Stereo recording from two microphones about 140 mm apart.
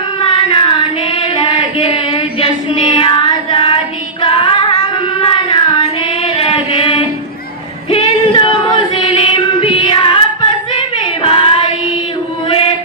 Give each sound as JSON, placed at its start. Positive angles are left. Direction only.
{"t": 0.2, "sound": "child singing", "side_deg": 40}
{"t": 4.2, "sound": "female singing", "side_deg": 35}
{"t": 5.2, "sound": "child singing", "side_deg": 40}
{"t": 7.9, "sound": "female singing", "side_deg": 40}
{"t": 9.0, "sound": "music", "side_deg": 35}
{"t": 10.8, "sound": "female singing", "side_deg": 35}